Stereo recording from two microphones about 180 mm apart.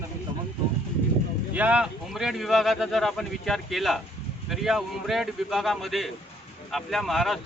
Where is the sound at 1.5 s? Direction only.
5° right (ahead or behind).